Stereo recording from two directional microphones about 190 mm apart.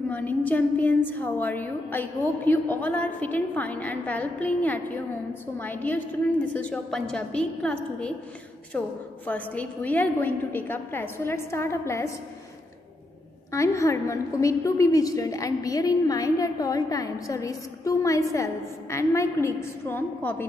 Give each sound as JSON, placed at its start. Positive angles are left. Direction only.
{"t": 0.1, "sound": "a woman's voice", "side_deg": 10}
{"t": 13.5, "sound": "a woman's voice", "side_deg": 15}